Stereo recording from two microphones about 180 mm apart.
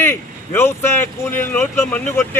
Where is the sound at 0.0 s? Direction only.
15° left (ahead or behind).